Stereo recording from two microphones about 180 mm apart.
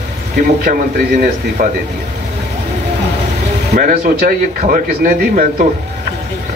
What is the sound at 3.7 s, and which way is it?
A man's voice, 50° right (ahead or behind).